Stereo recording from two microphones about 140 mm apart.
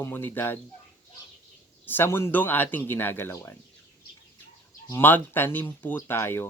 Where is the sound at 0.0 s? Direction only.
15° left (ahead or behind).